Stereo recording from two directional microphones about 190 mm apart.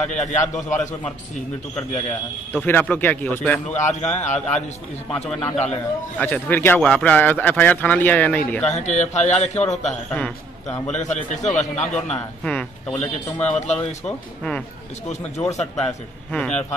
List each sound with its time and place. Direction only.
0.0 s a man's voice: 35° left (ahead or behind)
2.5 s speech: 10° left (ahead or behind)
3.6 s a man's voice: 40° left (ahead or behind)
6.1 s speech: 10° left (ahead or behind)
8.6 s a man's voice: 35° left (ahead or behind)
10.1 s a man's voice: 10° left (ahead or behind)
10.9 s a man's voice: 40° left (ahead or behind)
12.4 s speech: 5° left (ahead or behind)
13.6 s a man's voice: 35° left (ahead or behind)
14.0 s speech: 5° left (ahead or behind)
15.9 s speech: 5° left (ahead or behind)